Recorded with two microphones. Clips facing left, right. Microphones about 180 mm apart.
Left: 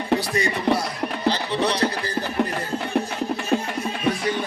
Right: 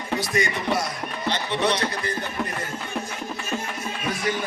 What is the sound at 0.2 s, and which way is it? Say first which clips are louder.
Music: left 1 dB; 35° left (ahead or behind).